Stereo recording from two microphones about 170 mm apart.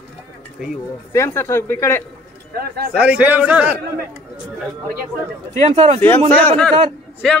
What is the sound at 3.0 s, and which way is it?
Speech, 10° right (ahead or behind).